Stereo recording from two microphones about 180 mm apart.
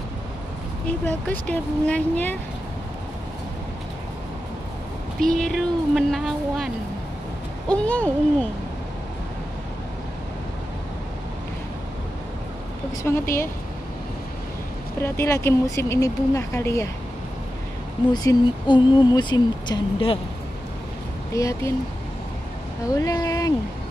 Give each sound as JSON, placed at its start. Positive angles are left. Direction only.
{"t": 0.8, "sound": "speech", "side_deg": 10}
{"t": 5.2, "sound": "speech", "side_deg": 5}
{"t": 13.0, "sound": "speech", "side_deg": 10}
{"t": 15.0, "sound": "speech", "side_deg": 15}
{"t": 18.1, "sound": "speech", "side_deg": 20}
{"t": 21.4, "sound": "speech", "side_deg": 20}
{"t": 22.8, "sound": "speech", "side_deg": 20}